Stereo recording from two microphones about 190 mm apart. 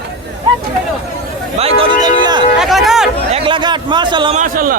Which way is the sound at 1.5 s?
30° right (ahead or behind).